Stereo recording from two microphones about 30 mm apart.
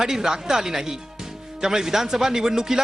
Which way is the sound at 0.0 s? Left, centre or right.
Centre.